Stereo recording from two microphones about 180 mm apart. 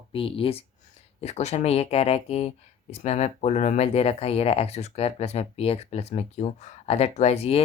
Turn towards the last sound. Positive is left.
turn(degrees=35)  # may be behind; listen again after turning